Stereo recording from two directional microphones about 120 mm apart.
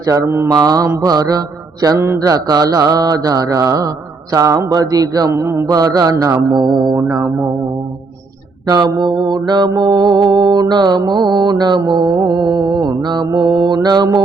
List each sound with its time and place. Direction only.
0.0 s mantra: 30° right (ahead or behind)
8.6 s mantra: 30° right (ahead or behind)